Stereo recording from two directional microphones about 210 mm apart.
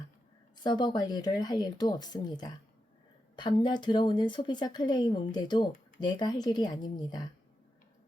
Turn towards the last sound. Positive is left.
turn(degrees=20)  # may be behind; listen again after turning